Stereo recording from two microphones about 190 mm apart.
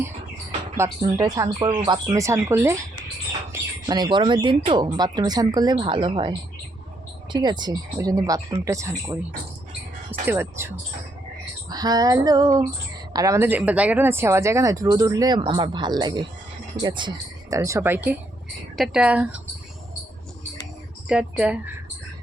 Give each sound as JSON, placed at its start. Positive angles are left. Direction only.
{"t": 0.8, "sound": "speech", "side_deg": -15}
{"t": 7.6, "sound": "speech", "side_deg": -20}
{"t": 10.1, "sound": "speech", "side_deg": -10}
{"t": 11.7, "sound": "speech", "side_deg": -20}
{"t": 21.1, "sound": "speech", "side_deg": -5}